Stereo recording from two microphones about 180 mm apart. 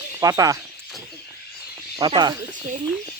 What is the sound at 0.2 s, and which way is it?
Speech, 20° right (ahead or behind).